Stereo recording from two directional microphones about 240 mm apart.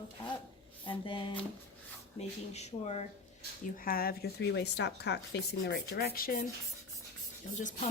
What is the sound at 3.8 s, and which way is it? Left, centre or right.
A woman's voice, left.